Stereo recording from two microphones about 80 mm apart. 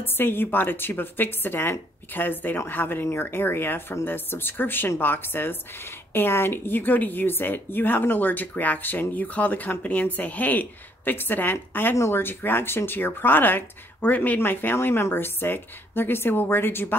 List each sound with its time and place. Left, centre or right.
0.0 s a woman's voice: left